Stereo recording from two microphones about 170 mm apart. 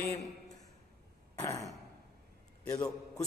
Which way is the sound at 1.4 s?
20° left (ahead or behind).